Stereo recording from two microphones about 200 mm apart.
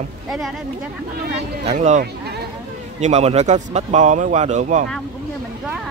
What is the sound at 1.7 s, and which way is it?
A man's voice, 35° right (ahead or behind).